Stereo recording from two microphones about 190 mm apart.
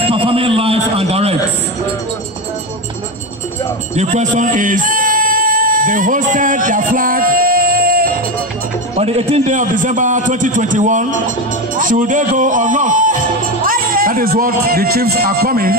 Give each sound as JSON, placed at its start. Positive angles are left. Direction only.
{"t": 0.0, "sound": "a sound", "side_deg": -30}
{"t": 3.9, "sound": "music", "side_deg": -40}
{"t": 8.9, "sound": "a man's voice", "side_deg": -30}